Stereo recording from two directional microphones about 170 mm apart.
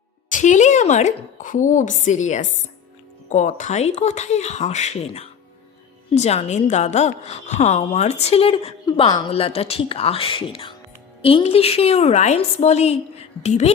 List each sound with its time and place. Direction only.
0.3 s a woman's voice: 50° left (ahead or behind)